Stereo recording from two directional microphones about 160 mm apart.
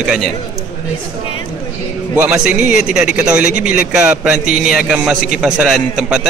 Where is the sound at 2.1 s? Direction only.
5° right (ahead or behind).